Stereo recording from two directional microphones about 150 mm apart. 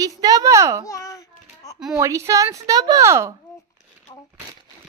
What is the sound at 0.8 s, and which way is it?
Babbling, 20° left (ahead or behind).